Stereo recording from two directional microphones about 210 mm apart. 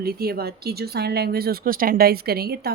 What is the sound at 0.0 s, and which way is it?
Speech, 45° right (ahead or behind).